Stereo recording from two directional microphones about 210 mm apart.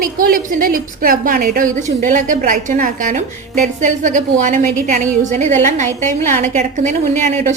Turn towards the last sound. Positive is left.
turn(degrees=-35)  # may be behind; listen again after turning